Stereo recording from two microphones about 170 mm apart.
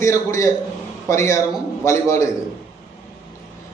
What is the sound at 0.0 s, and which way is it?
A man's voice, 15° left (ahead or behind).